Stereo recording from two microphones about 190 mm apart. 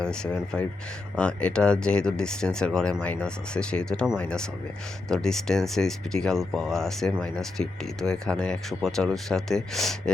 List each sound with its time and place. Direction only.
0.0 s speech: 5° left (ahead or behind)